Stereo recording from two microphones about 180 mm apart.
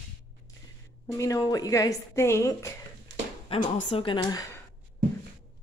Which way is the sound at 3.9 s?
25° left (ahead or behind).